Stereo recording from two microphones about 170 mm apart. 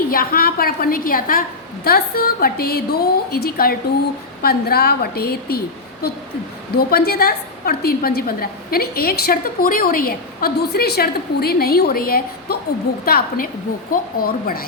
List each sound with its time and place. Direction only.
0.1 s a woman's voice: 60° left (ahead or behind)